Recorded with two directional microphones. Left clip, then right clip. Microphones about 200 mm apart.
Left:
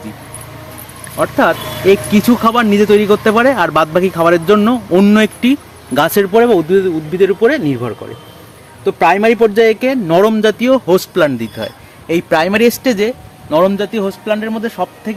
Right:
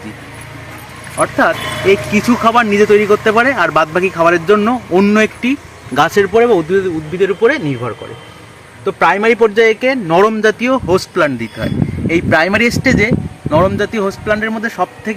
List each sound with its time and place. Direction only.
1.2 s speech: 45° left (ahead or behind)
1.9 s speech: 55° left (ahead or behind); by 15.1 s 20° left (ahead or behind)